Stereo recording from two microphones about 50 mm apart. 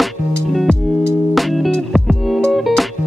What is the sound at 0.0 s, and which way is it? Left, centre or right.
Music, centre.